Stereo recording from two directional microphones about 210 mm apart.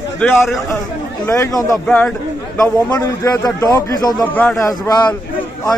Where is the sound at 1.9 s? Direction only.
5° left (ahead or behind).